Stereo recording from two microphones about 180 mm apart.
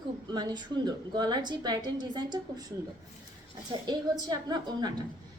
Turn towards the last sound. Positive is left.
turn(degrees=-20)  # may be behind; listen again after turning